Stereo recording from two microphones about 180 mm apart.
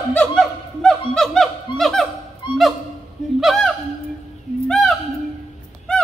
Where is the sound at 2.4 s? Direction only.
25° left (ahead or behind).